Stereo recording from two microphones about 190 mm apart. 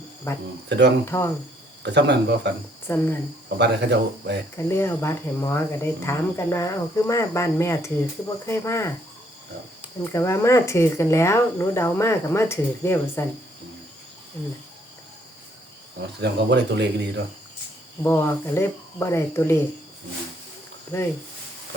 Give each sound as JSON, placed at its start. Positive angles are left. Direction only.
{"t": 0.3, "sound": "speech", "side_deg": 15}
{"t": 0.7, "sound": "speech", "side_deg": -65}
{"t": 1.0, "sound": "speech", "side_deg": 15}
{"t": 1.8, "sound": "speech", "side_deg": -65}
{"t": 2.8, "sound": "speech", "side_deg": 10}
{"t": 3.6, "sound": "speech", "side_deg": -65}
{"t": 4.5, "sound": "speech", "side_deg": 15}
{"t": 10.0, "sound": "speech", "side_deg": 15}
{"t": 16.2, "sound": "speech", "side_deg": -65}
{"t": 18.0, "sound": "speech", "side_deg": 10}